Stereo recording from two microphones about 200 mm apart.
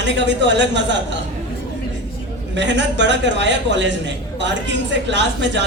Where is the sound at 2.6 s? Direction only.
60° right (ahead or behind).